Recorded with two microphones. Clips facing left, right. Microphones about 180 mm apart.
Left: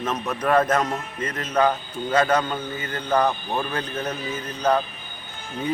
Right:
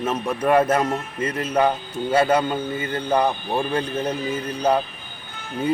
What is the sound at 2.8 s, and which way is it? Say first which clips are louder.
Speech: right 5 dB; 30° right (ahead or behind).